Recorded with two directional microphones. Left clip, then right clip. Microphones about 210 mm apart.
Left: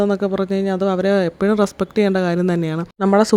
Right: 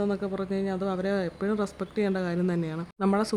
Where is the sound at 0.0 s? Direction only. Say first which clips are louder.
Left 11 dB; 35° left (ahead or behind).